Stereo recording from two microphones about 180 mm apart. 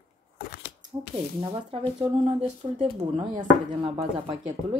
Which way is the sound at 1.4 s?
25° right (ahead or behind).